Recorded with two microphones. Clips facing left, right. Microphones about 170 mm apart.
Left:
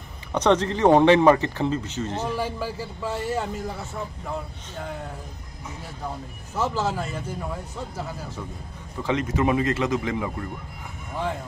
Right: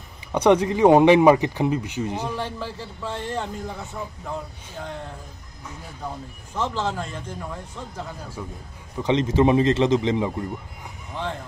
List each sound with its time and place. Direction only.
0.3 s speech: 10° right (ahead or behind)
2.3 s speech: 10° left (ahead or behind)
6.5 s speech: 5° left (ahead or behind)
8.9 s speech: 20° right (ahead or behind)